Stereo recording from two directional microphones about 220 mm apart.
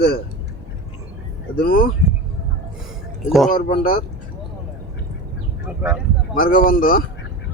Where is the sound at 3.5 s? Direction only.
35° left (ahead or behind).